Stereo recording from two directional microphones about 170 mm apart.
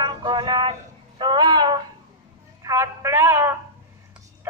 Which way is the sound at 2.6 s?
15° right (ahead or behind).